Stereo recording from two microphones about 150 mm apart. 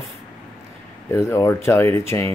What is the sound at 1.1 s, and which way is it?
Speech, 20° left (ahead or behind).